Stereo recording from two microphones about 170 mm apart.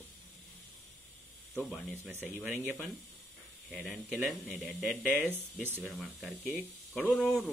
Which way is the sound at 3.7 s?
Centre (ahead or behind).